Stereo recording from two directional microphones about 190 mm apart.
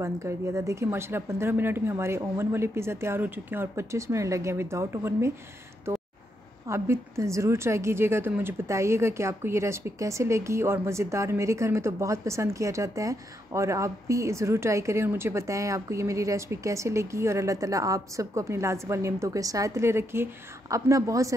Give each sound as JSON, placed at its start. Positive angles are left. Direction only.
{"t": 0.0, "sound": "a woman's voice", "side_deg": -15}
{"t": 6.7, "sound": "a woman's voice", "side_deg": -15}